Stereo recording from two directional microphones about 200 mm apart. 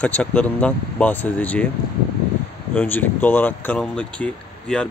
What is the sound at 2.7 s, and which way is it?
Speech, 10° left (ahead or behind).